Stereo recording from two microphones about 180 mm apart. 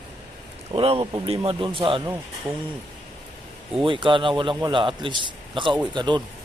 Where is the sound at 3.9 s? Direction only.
25° right (ahead or behind).